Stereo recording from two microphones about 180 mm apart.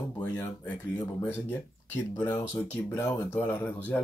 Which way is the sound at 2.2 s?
10° left (ahead or behind).